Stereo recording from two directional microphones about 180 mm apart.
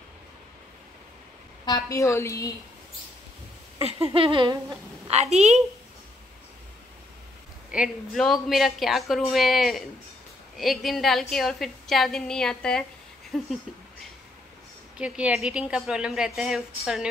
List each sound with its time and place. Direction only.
1.7 s a woman's voice: 15° left (ahead or behind)
3.8 s speech: 30° right (ahead or behind)
5.1 s a woman's voice: 35° right (ahead or behind)
7.7 s a woman's voice: centre (ahead or behind)
15.0 s a woman's voice: 5° right (ahead or behind)